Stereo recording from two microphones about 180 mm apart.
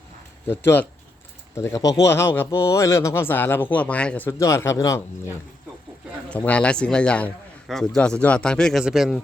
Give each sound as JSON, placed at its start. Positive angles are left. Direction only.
{"t": 0.4, "sound": "speech", "side_deg": 15}
{"t": 6.3, "sound": "a man's voice", "side_deg": 5}